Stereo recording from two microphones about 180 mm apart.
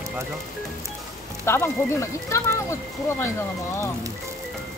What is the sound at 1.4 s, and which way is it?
Speech, 15° left (ahead or behind).